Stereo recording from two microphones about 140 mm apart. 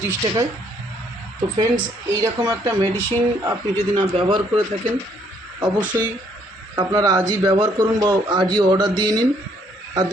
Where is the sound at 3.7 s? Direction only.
40° right (ahead or behind).